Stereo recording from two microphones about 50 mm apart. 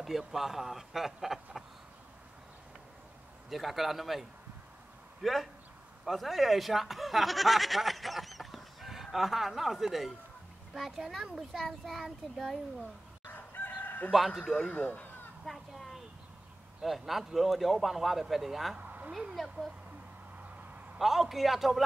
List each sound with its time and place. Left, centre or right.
0.0 s speech: centre
3.4 s speech: centre
13.3 s chicken: left
14.1 s speech: centre
14.4 s a man's voice: left
15.4 s speech: centre
18.8 s a sound: right
19.3 s speech: centre
21.0 s speech: centre